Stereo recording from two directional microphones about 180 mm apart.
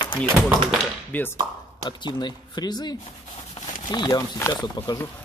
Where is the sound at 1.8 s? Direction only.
25° left (ahead or behind).